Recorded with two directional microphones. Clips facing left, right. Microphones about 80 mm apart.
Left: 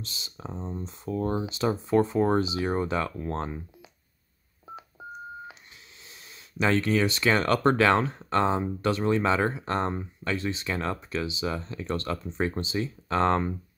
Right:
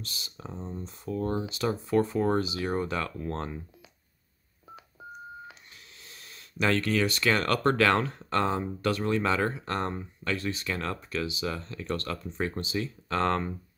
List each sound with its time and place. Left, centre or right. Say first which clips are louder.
0.0 s speech: left 2 dB; left
5.0 s telephone dialing: left 2 dB; left
6.0 s speech: even; centre